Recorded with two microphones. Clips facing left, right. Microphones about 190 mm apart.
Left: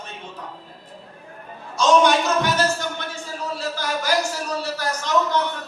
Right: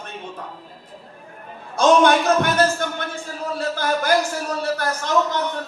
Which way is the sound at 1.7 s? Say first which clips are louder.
Right 2 dB; 55° right (ahead or behind).